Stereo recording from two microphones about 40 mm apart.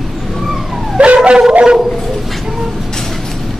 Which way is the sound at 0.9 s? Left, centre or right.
Right.